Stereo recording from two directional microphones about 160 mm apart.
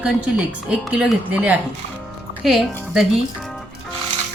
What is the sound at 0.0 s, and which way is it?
Speech, 5° right (ahead or behind).